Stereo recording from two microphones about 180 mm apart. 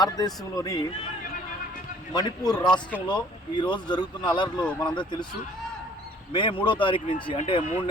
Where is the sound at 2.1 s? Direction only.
20° left (ahead or behind).